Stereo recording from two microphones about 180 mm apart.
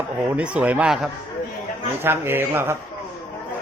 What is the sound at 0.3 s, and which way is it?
Speech, 5° right (ahead or behind).